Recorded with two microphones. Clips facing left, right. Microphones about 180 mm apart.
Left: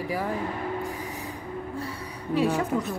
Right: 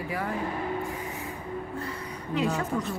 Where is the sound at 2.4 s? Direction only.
10° left (ahead or behind).